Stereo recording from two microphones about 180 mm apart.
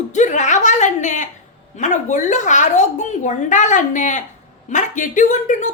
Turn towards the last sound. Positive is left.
turn(degrees=45)  # may be behind; listen again after turning